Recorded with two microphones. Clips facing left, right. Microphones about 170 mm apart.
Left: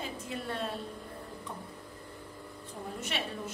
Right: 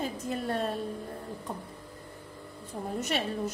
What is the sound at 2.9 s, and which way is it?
Speech, 40° right (ahead or behind).